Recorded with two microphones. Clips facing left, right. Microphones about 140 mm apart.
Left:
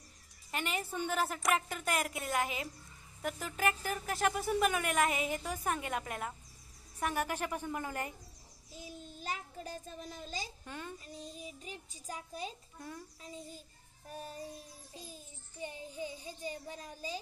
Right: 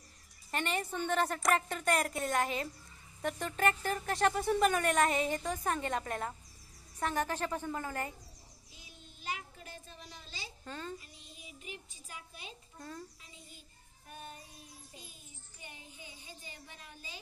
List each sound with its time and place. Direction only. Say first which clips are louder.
0.5 s a woman's voice: right 2 dB; 5° left (ahead or behind)
8.7 s child singing: left 12 dB; 40° left (ahead or behind)
10.6 s a child's voice: right 2 dB; 15° left (ahead or behind)
11.1 s a child's voice: left 9 dB; 40° left (ahead or behind)
12.7 s a child's voice: even; 15° left (ahead or behind)
14.1 s music: left 4 dB; 35° left (ahead or behind)
15.6 s a child's voice: left 12 dB; 35° left (ahead or behind)